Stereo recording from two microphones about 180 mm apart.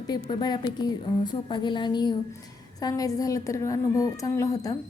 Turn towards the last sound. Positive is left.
turn(degrees=20)  # may be behind; listen again after turning